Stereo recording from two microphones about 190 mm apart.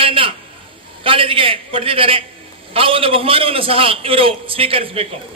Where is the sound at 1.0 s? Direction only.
30° right (ahead or behind).